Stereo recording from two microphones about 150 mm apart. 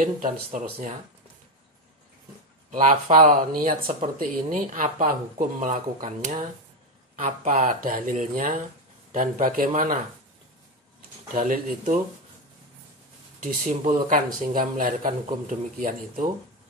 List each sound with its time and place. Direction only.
0.0 s speech: 65° right (ahead or behind)
2.7 s speech: 65° right (ahead or behind)
11.3 s speech: 70° right (ahead or behind)
13.4 s speech: 65° right (ahead or behind)